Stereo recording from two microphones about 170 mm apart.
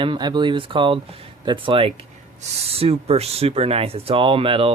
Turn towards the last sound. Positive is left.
turn(degrees=-30)  # may be behind; listen again after turning